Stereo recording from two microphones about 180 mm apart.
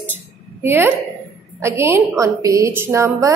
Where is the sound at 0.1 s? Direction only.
10° right (ahead or behind).